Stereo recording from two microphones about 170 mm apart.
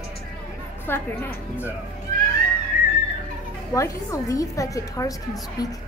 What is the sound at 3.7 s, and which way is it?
A woman's voice, 20° left (ahead or behind).